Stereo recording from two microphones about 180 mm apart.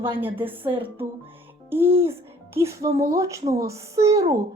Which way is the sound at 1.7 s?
15° right (ahead or behind).